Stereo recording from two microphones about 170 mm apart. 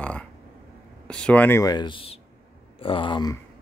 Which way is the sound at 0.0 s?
5° left (ahead or behind).